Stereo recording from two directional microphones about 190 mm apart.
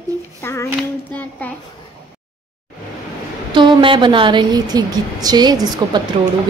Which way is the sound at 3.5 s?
25° right (ahead or behind).